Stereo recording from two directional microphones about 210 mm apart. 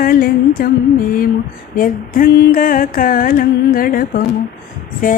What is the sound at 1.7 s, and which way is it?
Mantra, 40° left (ahead or behind).